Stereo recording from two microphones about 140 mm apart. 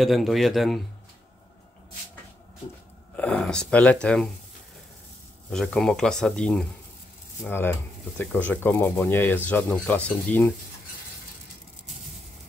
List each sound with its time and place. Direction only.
0.0 s speech: centre (ahead or behind)
3.2 s speech: 5° left (ahead or behind)
5.5 s speech: 5° left (ahead or behind)
7.4 s speech: 15° left (ahead or behind)